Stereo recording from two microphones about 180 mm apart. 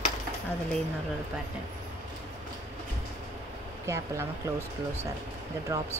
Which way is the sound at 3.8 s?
15° right (ahead or behind).